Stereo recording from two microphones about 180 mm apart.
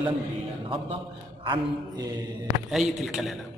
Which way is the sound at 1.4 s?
20° right (ahead or behind).